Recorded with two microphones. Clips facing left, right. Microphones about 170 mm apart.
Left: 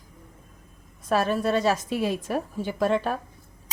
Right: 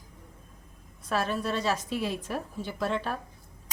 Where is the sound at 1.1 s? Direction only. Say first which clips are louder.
Left 6 dB; 50° left (ahead or behind).